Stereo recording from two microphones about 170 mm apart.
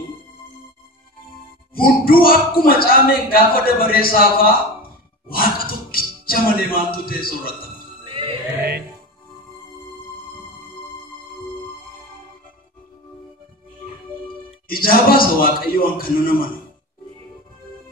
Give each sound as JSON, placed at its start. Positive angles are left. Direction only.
{"t": 1.8, "sound": "speech", "side_deg": 60}
{"t": 5.3, "sound": "a sound", "side_deg": 60}
{"t": 8.0, "sound": "music", "side_deg": -30}
{"t": 14.7, "sound": "speech", "side_deg": 60}